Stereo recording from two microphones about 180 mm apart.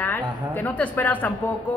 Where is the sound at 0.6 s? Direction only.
10° left (ahead or behind).